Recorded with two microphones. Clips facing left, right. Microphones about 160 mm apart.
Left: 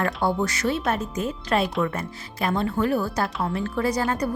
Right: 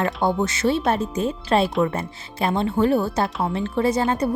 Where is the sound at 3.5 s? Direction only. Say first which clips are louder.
Right 3 dB; 25° right (ahead or behind).